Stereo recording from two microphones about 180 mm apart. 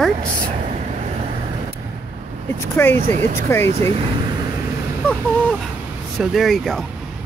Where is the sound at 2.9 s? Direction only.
40° right (ahead or behind).